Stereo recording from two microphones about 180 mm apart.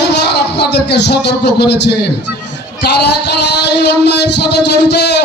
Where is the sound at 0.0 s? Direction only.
70° left (ahead or behind).